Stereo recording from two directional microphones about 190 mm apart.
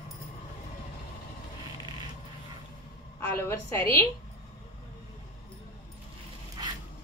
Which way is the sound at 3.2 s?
15° left (ahead or behind).